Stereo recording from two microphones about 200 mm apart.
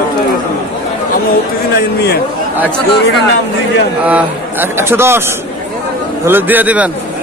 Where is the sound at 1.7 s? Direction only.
50° left (ahead or behind).